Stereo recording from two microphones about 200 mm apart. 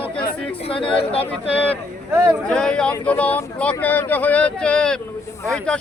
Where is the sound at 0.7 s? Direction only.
25° left (ahead or behind).